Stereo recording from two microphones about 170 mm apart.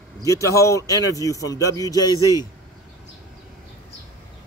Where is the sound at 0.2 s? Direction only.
20° left (ahead or behind).